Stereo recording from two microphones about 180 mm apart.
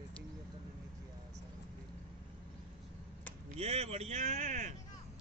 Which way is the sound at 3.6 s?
35° right (ahead or behind).